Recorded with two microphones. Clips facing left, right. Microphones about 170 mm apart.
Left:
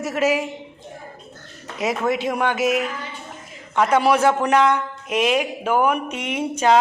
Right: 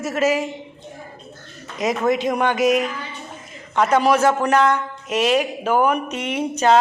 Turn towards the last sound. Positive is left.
turn(degrees=10)  # may be behind; listen again after turning